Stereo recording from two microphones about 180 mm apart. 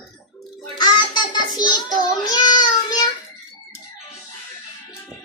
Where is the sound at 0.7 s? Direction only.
25° left (ahead or behind).